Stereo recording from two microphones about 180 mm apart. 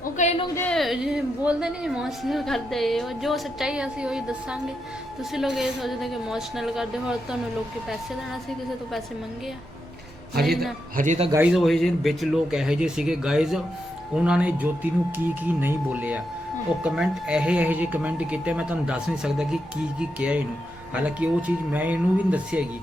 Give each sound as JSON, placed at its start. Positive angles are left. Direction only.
{"t": 0.0, "sound": "a sound", "side_deg": 40}
{"t": 0.5, "sound": "a woman's voice", "side_deg": 5}
{"t": 10.9, "sound": "speech", "side_deg": -40}
{"t": 11.3, "sound": "a woman's voice", "side_deg": -10}